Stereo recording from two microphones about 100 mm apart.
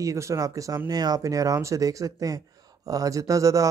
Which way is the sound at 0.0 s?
30° right (ahead or behind).